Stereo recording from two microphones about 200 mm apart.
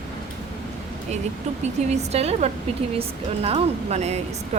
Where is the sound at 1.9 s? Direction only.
30° right (ahead or behind).